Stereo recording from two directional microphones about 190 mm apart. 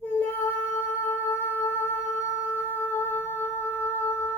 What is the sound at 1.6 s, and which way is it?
Humming, 15° left (ahead or behind).